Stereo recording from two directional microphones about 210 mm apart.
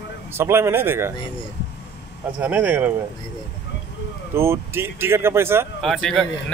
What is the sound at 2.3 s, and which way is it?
Speech, 10° right (ahead or behind).